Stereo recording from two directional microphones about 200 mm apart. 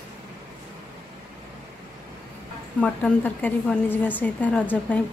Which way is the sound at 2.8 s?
10° left (ahead or behind).